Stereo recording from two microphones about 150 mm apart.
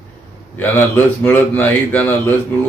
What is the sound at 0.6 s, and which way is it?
A man's voice, 15° left (ahead or behind).